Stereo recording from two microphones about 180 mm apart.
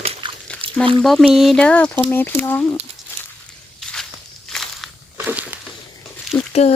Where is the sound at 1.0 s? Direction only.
Centre (ahead or behind).